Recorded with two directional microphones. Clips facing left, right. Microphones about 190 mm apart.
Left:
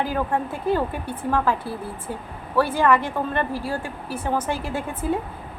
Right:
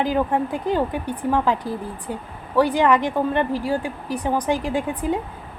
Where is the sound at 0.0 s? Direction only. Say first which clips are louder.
Right 3 dB; 15° right (ahead or behind).